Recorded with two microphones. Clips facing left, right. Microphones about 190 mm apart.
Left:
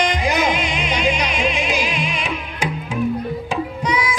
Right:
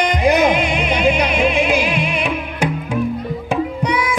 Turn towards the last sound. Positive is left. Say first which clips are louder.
# right 2 dB
turn(degrees=-60)  # may be behind; listen again after turning